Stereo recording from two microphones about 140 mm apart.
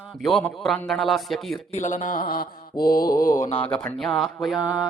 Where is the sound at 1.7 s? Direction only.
60° left (ahead or behind); by 3.1 s 90° left.